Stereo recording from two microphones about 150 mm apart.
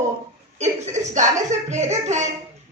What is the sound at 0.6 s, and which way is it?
A woman's voice, 50° right (ahead or behind).